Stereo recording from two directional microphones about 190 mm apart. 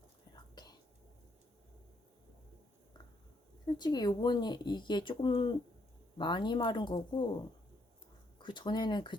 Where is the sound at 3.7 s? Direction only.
20° left (ahead or behind).